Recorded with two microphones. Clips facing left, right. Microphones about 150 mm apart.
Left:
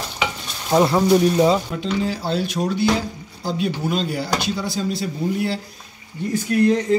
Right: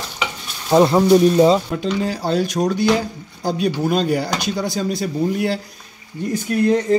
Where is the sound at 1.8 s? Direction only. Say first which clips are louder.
Right 2 dB; 45° right (ahead or behind).